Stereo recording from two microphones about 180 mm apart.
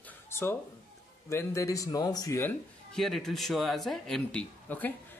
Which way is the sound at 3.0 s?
Centre (ahead or behind).